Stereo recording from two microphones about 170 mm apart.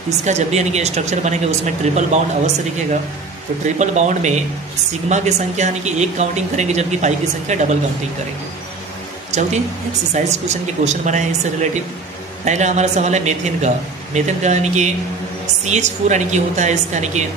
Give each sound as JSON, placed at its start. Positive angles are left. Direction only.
{"t": 0.2, "sound": "speech", "side_deg": -40}
{"t": 9.3, "sound": "speech", "side_deg": -40}
{"t": 10.8, "sound": "speech", "side_deg": -45}